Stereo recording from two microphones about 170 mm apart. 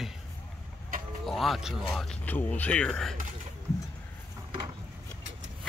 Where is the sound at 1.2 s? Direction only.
Centre (ahead or behind).